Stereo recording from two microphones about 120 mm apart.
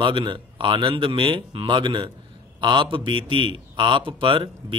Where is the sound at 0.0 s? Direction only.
40° right (ahead or behind).